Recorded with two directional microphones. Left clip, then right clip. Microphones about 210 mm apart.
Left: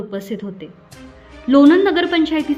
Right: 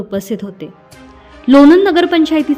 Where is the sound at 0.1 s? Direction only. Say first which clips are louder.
Right 6 dB; 40° right (ahead or behind).